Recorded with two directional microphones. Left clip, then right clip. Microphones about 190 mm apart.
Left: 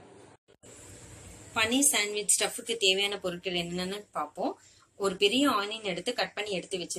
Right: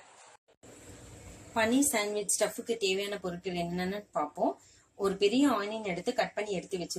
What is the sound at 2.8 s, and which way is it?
Speech, 30° right (ahead or behind).